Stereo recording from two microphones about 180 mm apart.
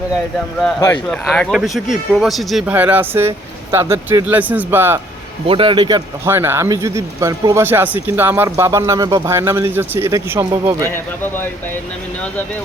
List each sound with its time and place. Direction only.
1.0 s speech: 5° left (ahead or behind); by 4.9 s 10° right (ahead or behind)
5.5 s a man's voice: 30° right (ahead or behind)
6.2 s speech: 15° right (ahead or behind)
10.8 s speech: 10° left (ahead or behind)